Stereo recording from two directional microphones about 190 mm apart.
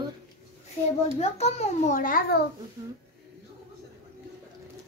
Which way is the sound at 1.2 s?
35° left (ahead or behind).